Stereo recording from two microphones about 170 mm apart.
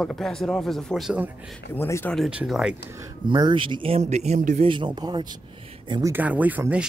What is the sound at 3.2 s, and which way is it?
Speech, 25° right (ahead or behind).